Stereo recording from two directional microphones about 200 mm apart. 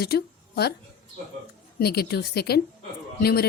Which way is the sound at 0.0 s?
55° left (ahead or behind).